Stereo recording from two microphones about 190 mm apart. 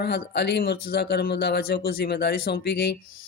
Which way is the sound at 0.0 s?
60° left (ahead or behind).